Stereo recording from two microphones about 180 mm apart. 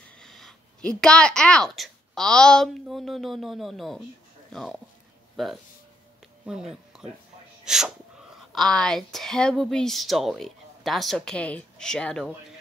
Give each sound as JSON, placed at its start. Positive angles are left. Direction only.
{"t": 0.2, "sound": "a woman's voice", "side_deg": 0}